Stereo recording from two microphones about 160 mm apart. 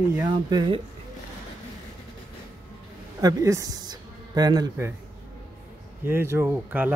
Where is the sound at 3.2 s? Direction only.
20° right (ahead or behind).